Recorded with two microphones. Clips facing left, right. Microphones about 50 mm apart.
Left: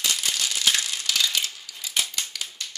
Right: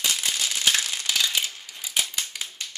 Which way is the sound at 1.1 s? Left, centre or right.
Centre.